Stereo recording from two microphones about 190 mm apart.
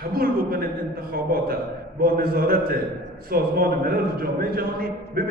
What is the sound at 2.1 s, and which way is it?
A man's voice, 50° right (ahead or behind).